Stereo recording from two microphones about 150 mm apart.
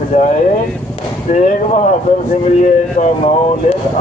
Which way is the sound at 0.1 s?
60° left (ahead or behind).